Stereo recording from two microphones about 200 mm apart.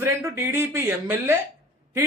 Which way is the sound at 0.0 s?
15° right (ahead or behind).